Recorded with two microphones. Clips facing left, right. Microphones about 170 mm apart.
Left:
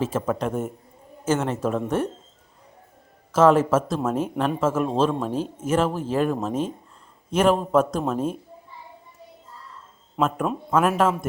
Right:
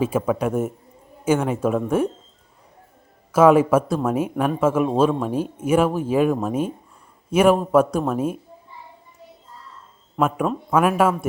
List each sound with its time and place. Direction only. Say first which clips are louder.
0.0 s speech: right 3 dB; 10° right (ahead or behind)
3.3 s speech: right 3 dB; 10° right (ahead or behind)
10.2 s speech: right 2 dB; 10° right (ahead or behind)
10.4 s speech: right 2 dB; 5° left (ahead or behind)
10.8 s speech: right 2 dB; 10° right (ahead or behind)